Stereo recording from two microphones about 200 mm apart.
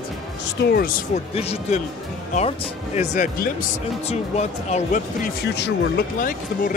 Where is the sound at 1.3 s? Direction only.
30° left (ahead or behind).